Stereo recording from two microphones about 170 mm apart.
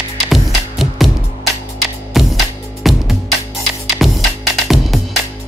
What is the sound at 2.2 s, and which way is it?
Music, centre (ahead or behind).